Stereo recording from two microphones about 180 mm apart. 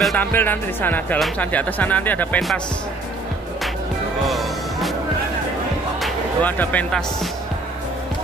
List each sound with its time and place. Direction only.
0.0 s speech: 5° left (ahead or behind)
4.3 s music: centre (ahead or behind)
5.9 s speech: 5° left (ahead or behind)